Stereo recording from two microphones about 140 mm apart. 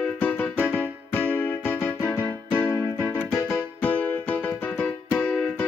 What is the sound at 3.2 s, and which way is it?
Music, 5° left (ahead or behind).